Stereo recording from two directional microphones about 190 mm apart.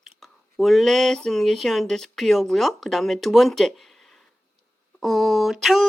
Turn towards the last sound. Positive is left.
turn(degrees=0)  # may be behind; listen again after turning